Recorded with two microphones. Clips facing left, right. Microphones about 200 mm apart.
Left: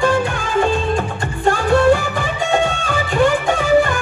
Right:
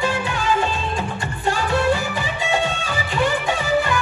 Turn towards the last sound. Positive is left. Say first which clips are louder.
# left 6 dB
turn(degrees=50)  # may be behind; listen again after turning